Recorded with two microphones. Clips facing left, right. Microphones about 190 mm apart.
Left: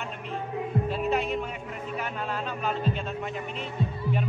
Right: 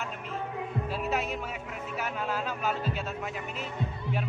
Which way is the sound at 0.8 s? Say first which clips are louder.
Left 3 dB; 5° right (ahead or behind).